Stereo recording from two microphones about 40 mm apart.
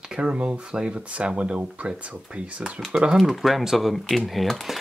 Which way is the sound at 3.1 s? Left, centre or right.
Centre.